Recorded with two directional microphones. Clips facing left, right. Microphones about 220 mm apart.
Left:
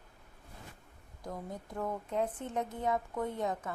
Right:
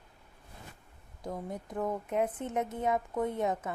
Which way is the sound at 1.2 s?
20° right (ahead or behind).